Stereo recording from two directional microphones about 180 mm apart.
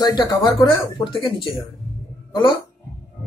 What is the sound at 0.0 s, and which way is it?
Speech, 20° left (ahead or behind).